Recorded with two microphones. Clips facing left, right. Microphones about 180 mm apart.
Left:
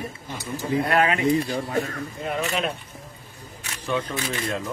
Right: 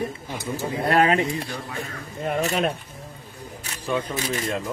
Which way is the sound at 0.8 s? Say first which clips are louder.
Right 3 dB; 35° right (ahead or behind).